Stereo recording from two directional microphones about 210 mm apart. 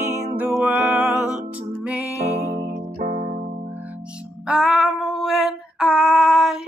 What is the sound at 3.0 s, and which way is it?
Keyboard, 40° right (ahead or behind).